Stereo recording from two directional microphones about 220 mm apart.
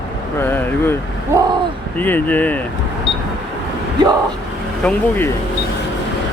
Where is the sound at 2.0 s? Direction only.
10° left (ahead or behind).